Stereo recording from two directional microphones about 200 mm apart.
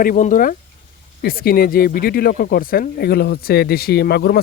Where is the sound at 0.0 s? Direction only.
40° left (ahead or behind).